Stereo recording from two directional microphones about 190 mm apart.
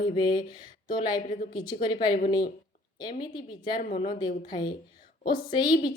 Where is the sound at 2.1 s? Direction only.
50° left (ahead or behind).